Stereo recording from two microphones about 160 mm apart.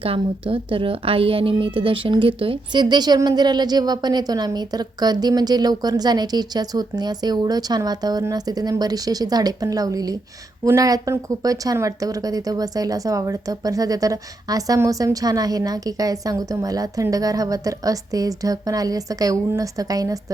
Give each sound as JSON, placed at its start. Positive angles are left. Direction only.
{"t": 0.0, "sound": "a woman's voice", "side_deg": -35}